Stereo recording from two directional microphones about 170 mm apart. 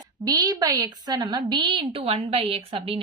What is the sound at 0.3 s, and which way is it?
A woman's voice, 25° right (ahead or behind).